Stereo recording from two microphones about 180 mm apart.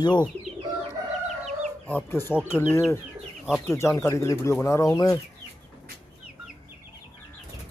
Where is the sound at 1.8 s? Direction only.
10° left (ahead or behind).